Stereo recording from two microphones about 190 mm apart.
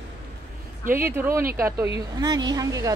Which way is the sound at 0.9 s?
10° right (ahead or behind).